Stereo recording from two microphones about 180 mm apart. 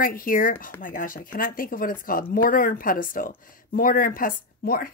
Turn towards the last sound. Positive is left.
turn(degrees=55)  # may be behind; listen again after turning